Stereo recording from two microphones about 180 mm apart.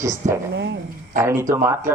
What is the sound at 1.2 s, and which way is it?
Speech, 15° right (ahead or behind).